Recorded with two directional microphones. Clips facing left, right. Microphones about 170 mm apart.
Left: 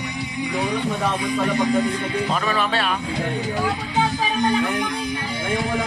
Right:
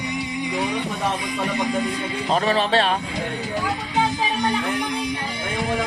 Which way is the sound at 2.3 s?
35° right (ahead or behind).